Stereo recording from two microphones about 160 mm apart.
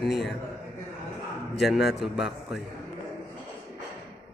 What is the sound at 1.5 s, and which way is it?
A man's voice, centre (ahead or behind).